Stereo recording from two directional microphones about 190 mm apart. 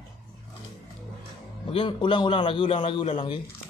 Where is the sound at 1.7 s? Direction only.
25° left (ahead or behind).